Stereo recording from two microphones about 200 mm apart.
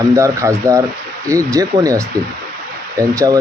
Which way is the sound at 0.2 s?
15° right (ahead or behind).